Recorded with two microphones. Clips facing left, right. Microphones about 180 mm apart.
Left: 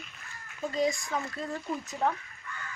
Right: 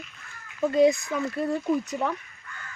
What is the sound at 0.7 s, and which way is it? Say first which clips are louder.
Speech: right 9 dB; 65° right (ahead or behind).